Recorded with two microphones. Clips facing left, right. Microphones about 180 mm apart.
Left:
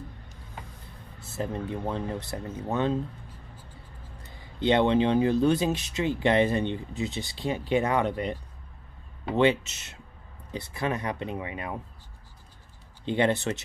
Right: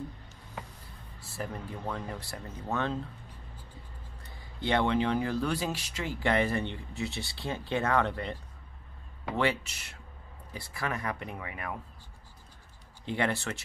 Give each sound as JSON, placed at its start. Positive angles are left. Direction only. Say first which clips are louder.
{"t": 1.2, "sound": "speech", "louder": "left 6 dB", "side_deg": 25}
{"t": 4.6, "sound": "speech", "louder": "left 5 dB", "side_deg": 20}
{"t": 13.0, "sound": "speech", "louder": "left 6 dB", "side_deg": 20}